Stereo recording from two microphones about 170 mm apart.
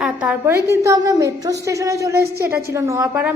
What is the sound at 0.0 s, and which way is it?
A woman's voice, 5° right (ahead or behind).